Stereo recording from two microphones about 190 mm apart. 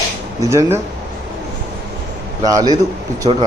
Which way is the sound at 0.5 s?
15° right (ahead or behind).